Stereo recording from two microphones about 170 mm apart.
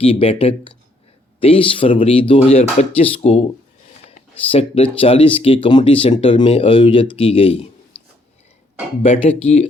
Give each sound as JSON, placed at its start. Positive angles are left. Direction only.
{"t": 0.0, "sound": "speech", "side_deg": 35}
{"t": 4.4, "sound": "speech", "side_deg": 35}
{"t": 9.0, "sound": "speech", "side_deg": 40}